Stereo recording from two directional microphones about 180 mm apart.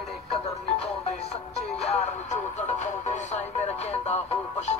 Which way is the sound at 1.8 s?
35° left (ahead or behind).